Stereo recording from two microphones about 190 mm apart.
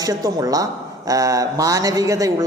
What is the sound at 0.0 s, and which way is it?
A woman's voice, 20° right (ahead or behind).